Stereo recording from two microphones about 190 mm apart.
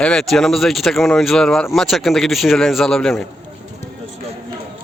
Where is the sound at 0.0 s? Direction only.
5° left (ahead or behind).